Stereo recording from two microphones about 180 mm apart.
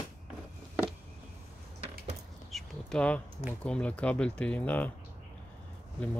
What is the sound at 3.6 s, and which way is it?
Speech, 5° left (ahead or behind).